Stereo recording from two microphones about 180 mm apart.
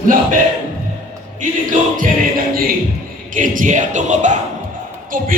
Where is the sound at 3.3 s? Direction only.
45° right (ahead or behind).